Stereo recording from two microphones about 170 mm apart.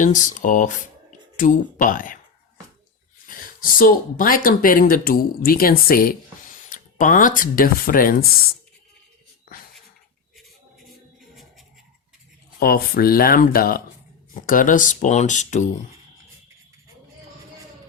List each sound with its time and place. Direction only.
0.3 s speech: 50° left (ahead or behind)
3.2 s speech: 55° left (ahead or behind)
12.5 s speech: 60° left (ahead or behind); by 15.7 s 45° left (ahead or behind)